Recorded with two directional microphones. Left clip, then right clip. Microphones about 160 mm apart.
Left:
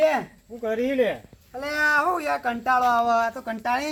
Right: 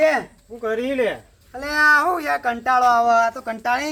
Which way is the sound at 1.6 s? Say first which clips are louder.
Right 6 dB; 10° right (ahead or behind).